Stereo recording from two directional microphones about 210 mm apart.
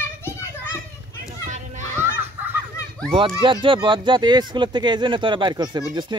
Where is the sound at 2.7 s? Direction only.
5° left (ahead or behind).